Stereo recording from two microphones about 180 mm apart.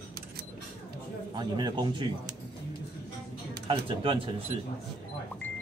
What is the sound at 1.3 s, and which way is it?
Speech, 25° right (ahead or behind).